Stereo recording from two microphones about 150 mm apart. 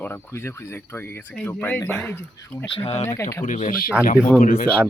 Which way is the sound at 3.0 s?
15° left (ahead or behind).